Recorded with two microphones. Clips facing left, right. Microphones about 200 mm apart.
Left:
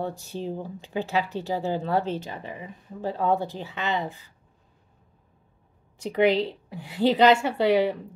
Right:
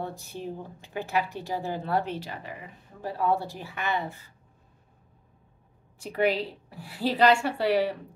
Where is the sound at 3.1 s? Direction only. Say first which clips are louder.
Left 2 dB; 20° left (ahead or behind).